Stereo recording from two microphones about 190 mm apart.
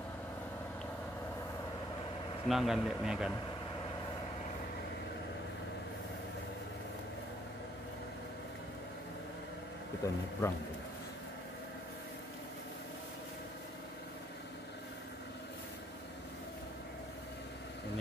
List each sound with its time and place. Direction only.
2.4 s a man's voice: centre (ahead or behind)
10.0 s speech: 15° left (ahead or behind)